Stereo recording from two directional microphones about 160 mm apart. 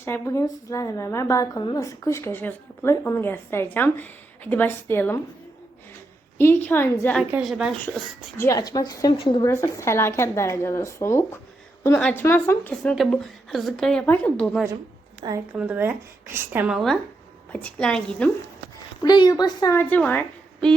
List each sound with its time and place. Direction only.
0.0 s a woman's voice: 15° left (ahead or behind)
6.4 s a woman's voice: 15° left (ahead or behind)
7.4 s a woman's voice: centre (ahead or behind)
8.4 s a woman's voice: 20° left (ahead or behind)
9.5 s a woman's voice: 15° left (ahead or behind)
11.9 s a woman's voice: 5° left (ahead or behind)
12.2 s a woman's voice: 15° left (ahead or behind)
12.8 s a woman's voice: 5° left (ahead or behind)
15.2 s a woman's voice: 35° right (ahead or behind)
15.5 s a woman's voice: 10° right (ahead or behind)
16.7 s a woman's voice: centre (ahead or behind)
19.0 s a woman's voice: 25° left (ahead or behind)
19.7 s a woman's voice: 10° left (ahead or behind)